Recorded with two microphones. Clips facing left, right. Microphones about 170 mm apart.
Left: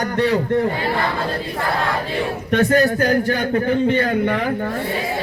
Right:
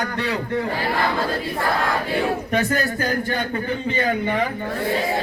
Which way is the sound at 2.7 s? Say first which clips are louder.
Left 7 dB; 65° left (ahead or behind).